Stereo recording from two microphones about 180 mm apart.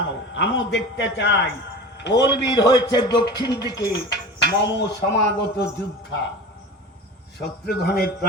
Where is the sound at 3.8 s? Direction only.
70° left (ahead or behind).